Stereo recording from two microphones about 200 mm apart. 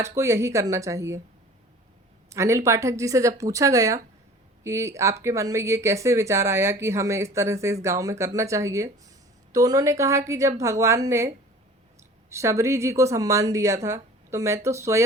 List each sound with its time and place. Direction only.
0.0 s speech: 15° right (ahead or behind)
2.3 s speech: 15° right (ahead or behind)